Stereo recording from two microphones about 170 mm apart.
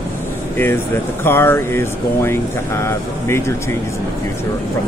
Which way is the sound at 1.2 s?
15° left (ahead or behind).